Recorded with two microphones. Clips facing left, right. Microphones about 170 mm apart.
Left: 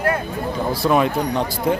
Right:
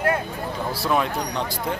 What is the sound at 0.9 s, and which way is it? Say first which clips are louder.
Speech: left 5 dB; 10° left (ahead or behind).